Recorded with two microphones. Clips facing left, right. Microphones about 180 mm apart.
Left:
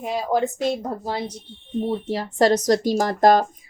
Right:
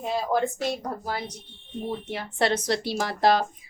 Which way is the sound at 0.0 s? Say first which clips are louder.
Left 3 dB; 15° left (ahead or behind).